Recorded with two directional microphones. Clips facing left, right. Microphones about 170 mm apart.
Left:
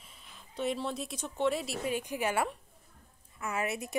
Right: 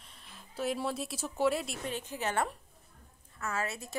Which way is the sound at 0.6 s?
5° right (ahead or behind).